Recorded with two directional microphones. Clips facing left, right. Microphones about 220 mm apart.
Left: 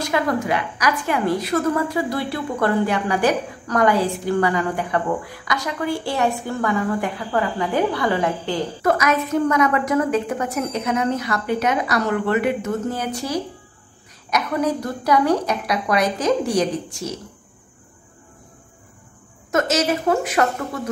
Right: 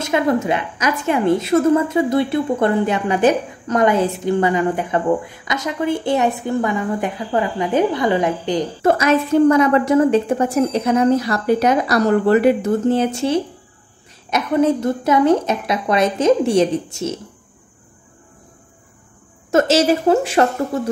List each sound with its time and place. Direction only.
0.0 s a woman's voice: 25° right (ahead or behind)
19.5 s a woman's voice: 30° right (ahead or behind)